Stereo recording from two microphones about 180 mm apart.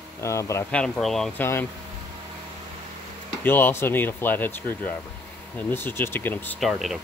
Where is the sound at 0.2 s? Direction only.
15° left (ahead or behind).